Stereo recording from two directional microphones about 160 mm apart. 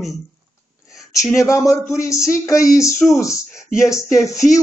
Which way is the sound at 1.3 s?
20° left (ahead or behind).